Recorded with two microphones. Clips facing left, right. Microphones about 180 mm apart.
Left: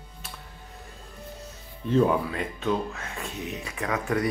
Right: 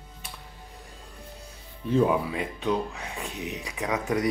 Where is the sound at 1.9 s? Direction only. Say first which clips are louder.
Left 1 dB; 10° right (ahead or behind).